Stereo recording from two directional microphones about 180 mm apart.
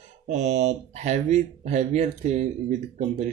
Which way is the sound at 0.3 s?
40° right (ahead or behind).